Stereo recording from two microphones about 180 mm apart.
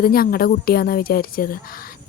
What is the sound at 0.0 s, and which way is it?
A woman's voice, 55° left (ahead or behind).